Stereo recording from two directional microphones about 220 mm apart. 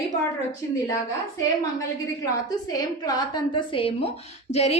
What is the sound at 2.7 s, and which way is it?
A woman's voice, 20° left (ahead or behind).